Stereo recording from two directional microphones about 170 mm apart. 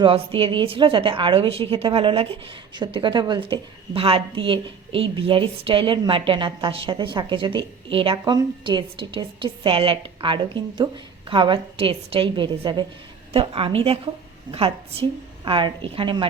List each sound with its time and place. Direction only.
0.0 s a woman's voice: 30° right (ahead or behind)
15.4 s a woman's voice: 30° right (ahead or behind)